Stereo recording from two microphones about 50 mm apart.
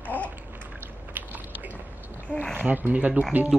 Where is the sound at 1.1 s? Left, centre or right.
Right.